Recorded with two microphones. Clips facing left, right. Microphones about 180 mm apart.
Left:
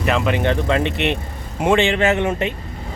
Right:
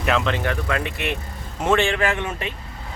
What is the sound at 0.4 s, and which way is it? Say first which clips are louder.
Speech: left 6 dB; 25° left (ahead or behind).